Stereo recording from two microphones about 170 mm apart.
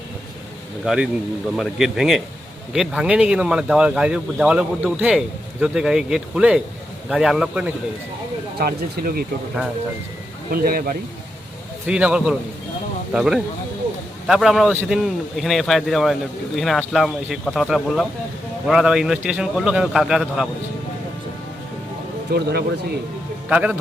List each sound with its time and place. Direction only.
0.9 s speech: 5° right (ahead or behind)
8.5 s speech: 60° right (ahead or behind)
10.5 s speech: 60° right (ahead or behind)
11.9 s speech: 5° right (ahead or behind)
22.3 s speech: 70° right (ahead or behind)
23.5 s a man's voice: 10° right (ahead or behind)